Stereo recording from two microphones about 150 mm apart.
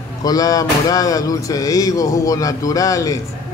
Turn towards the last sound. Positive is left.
turn(degrees=20)  # may be behind; listen again after turning